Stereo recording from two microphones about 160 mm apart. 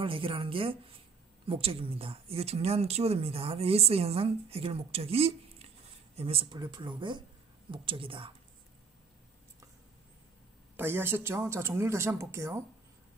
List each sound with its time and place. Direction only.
0.0 s speech: 35° right (ahead or behind)
10.8 s speech: 15° right (ahead or behind)